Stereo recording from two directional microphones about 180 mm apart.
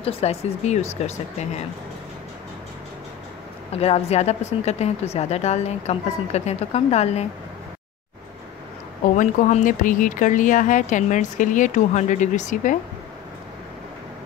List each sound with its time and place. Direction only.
0.0 s a woman's voice: 35° left (ahead or behind)
3.7 s a woman's voice: 35° left (ahead or behind)
9.1 s speech: 45° left (ahead or behind)